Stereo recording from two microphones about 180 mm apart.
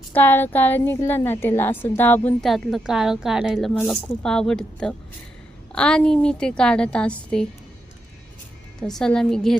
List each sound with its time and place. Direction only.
0.1 s a woman's voice: 10° left (ahead or behind)
8.8 s a woman's voice: 5° left (ahead or behind)